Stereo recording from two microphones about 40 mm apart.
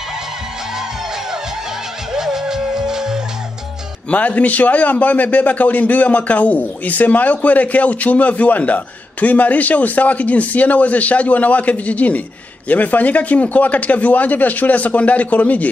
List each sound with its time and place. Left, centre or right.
2.1 s music: centre
4.1 s a man's voice: left